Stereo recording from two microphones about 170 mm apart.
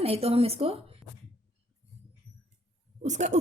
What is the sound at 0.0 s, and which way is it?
Speech, 35° right (ahead or behind).